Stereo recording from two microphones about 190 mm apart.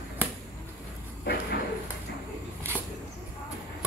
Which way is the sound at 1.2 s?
55° left (ahead or behind).